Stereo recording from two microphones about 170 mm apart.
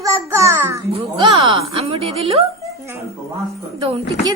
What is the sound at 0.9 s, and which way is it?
Speech, 30° right (ahead or behind).